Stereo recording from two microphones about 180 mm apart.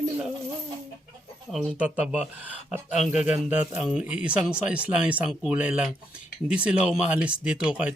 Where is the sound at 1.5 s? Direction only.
5° right (ahead or behind).